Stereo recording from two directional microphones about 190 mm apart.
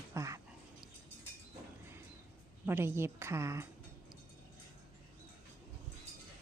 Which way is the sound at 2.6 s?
10° right (ahead or behind).